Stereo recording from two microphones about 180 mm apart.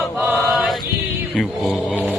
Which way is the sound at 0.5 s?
5° right (ahead or behind).